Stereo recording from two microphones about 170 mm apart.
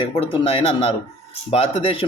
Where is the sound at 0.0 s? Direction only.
35° left (ahead or behind).